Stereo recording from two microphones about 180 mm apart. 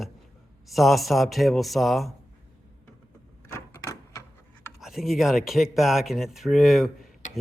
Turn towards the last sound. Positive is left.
turn(degrees=0)  # may be behind; listen again after turning